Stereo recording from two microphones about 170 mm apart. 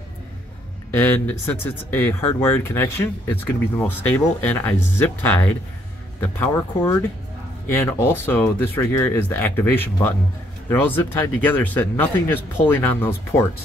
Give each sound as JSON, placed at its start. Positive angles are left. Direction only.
{"t": 0.9, "sound": "speech", "side_deg": 10}